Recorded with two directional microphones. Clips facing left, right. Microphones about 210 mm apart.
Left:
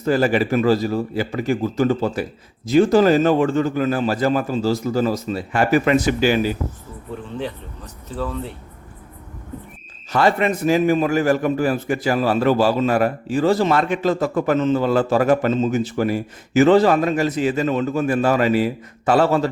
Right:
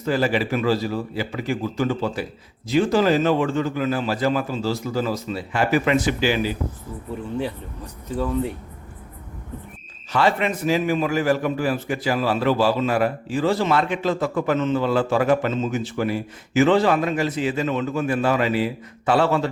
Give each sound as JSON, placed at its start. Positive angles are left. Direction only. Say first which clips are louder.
{"t": 0.0, "sound": "a man's voice", "louder": "left 4 dB", "side_deg": 45}
{"t": 8.1, "sound": "speech", "louder": "right 3 dB", "side_deg": -15}
{"t": 10.1, "sound": "a man's voice", "louder": "left 3 dB", "side_deg": 45}